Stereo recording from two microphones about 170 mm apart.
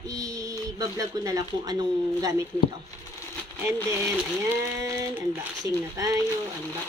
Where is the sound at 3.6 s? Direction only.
15° right (ahead or behind).